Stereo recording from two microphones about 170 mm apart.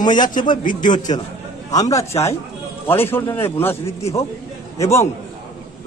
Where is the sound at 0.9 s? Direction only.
25° left (ahead or behind).